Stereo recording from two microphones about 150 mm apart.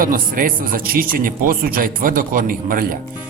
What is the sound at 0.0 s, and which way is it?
Speech, 70° right (ahead or behind).